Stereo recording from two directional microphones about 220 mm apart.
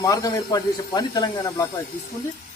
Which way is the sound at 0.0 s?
15° left (ahead or behind).